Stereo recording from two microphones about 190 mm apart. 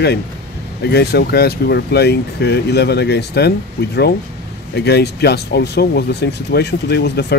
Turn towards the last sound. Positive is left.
turn(degrees=60)  # may be behind; listen again after turning